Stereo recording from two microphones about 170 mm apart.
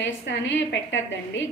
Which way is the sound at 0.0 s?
90° left.